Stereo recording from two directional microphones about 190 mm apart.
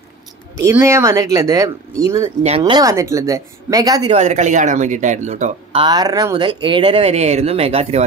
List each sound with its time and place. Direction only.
0.6 s speech: 15° right (ahead or behind)
2.4 s speech: 30° right (ahead or behind)
4.1 s speech: 35° right (ahead or behind)